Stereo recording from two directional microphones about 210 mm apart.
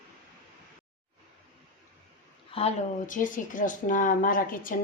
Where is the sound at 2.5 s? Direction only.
35° left (ahead or behind).